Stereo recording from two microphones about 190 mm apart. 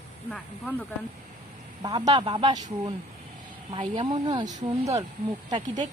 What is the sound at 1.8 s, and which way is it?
A man's voice, 20° right (ahead or behind).